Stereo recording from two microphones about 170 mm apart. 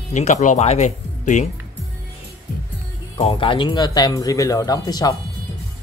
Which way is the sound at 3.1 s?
30° left (ahead or behind).